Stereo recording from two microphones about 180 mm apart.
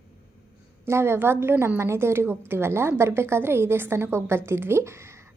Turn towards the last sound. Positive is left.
turn(degrees=-15)  # may be behind; listen again after turning